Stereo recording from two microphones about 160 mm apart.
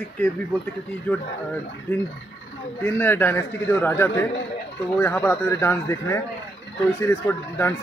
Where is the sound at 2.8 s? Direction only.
15° left (ahead or behind).